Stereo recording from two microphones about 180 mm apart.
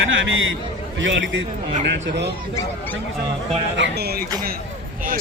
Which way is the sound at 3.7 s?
70° right (ahead or behind).